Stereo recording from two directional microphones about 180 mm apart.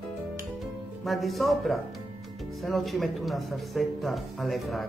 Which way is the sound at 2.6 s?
Centre (ahead or behind).